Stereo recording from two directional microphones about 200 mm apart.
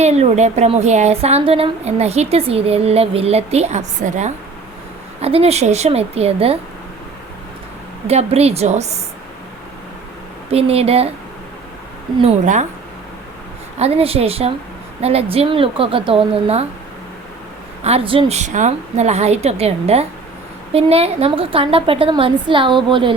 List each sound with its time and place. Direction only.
0.0 s a woman's voice: 35° right (ahead or behind)
8.0 s a woman's voice: 30° right (ahead or behind)
10.5 s a woman's voice: 30° right (ahead or behind)
12.2 s a woman's voice: 35° right (ahead or behind)
13.7 s a woman's voice: 30° right (ahead or behind)
17.8 s a woman's voice: 30° right (ahead or behind)